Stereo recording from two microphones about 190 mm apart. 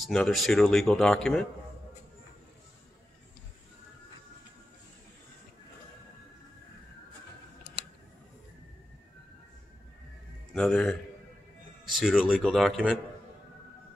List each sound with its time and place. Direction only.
0.0 s speech: centre (ahead or behind)
10.5 s a man's voice: 5° left (ahead or behind)